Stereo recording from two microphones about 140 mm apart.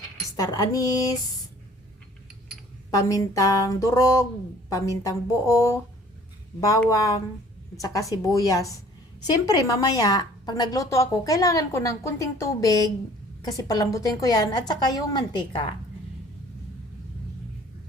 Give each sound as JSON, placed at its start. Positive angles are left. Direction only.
{"t": 0.3, "sound": "a woman's voice", "side_deg": 25}
{"t": 2.9, "sound": "a woman's voice", "side_deg": 25}
{"t": 6.8, "sound": "a woman's voice", "side_deg": 25}